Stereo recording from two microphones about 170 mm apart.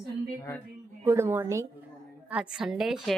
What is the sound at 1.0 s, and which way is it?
Speech, 15° right (ahead or behind).